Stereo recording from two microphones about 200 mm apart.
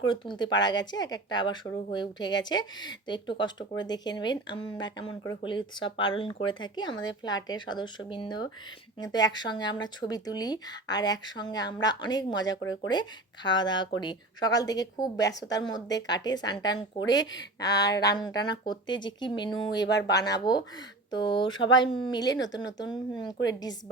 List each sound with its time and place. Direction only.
0.0 s speech: 25° left (ahead or behind)
19.8 s speech: 60° left (ahead or behind)
20.1 s speech: 20° left (ahead or behind)